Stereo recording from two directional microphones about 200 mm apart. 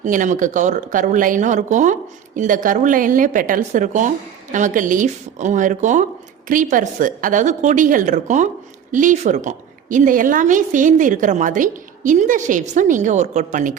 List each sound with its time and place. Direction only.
0.0 s a woman's voice: 40° right (ahead or behind)